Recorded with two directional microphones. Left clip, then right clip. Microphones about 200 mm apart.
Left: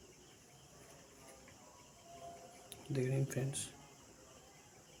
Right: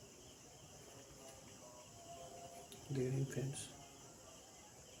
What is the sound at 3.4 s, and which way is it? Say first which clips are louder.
Speech: left 4 dB; 55° left (ahead or behind).